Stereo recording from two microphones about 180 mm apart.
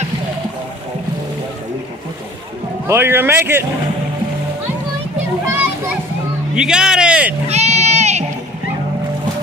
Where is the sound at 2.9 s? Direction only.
10° right (ahead or behind).